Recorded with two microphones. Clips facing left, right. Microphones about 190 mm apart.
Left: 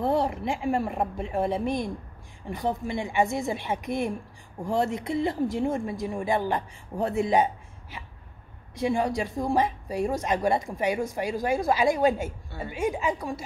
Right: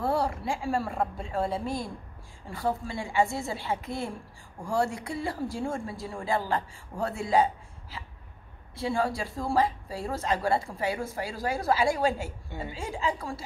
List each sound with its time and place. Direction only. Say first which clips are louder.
0.0 s speech: left 3 dB; 20° left (ahead or behind)
12.4 s a woman's voice: left 1 dB; 20° right (ahead or behind)
12.7 s speech: left 5 dB; 20° left (ahead or behind)